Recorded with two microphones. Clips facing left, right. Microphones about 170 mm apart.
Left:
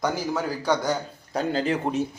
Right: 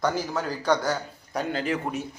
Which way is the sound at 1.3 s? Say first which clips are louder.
Left 3 dB; 30° left (ahead or behind).